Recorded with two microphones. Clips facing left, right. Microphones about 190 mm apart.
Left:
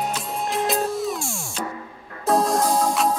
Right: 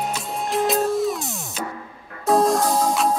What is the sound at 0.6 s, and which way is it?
Music, centre (ahead or behind).